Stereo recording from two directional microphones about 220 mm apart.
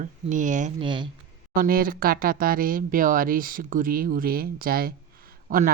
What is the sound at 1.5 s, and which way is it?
Speech, 40° right (ahead or behind).